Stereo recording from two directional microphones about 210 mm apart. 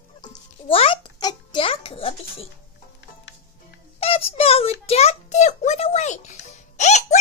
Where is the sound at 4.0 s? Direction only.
25° left (ahead or behind).